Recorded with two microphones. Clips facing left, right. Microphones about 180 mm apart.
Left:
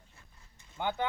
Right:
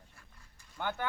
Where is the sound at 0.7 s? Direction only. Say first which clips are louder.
Left 3 dB; 20° left (ahead or behind).